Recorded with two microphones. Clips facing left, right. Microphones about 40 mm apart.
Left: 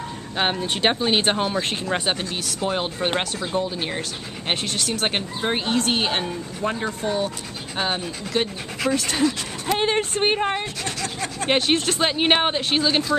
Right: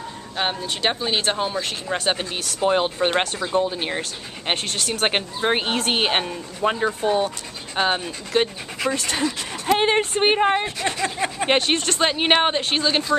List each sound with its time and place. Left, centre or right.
0.4 s speech: centre
2.0 s speech: centre
3.6 s speech: centre
5.0 s speech: centre
6.8 s speech: centre
9.7 s speech: centre
11.5 s speech: centre